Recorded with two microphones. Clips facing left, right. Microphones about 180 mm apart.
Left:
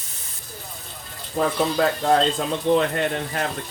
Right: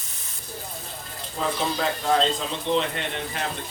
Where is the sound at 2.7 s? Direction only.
50° left (ahead or behind).